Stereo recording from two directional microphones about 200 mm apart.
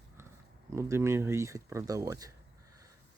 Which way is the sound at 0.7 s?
15° right (ahead or behind).